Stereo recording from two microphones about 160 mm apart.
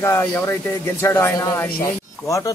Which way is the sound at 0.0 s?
15° left (ahead or behind).